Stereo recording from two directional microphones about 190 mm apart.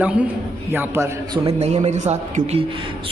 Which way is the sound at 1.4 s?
35° right (ahead or behind).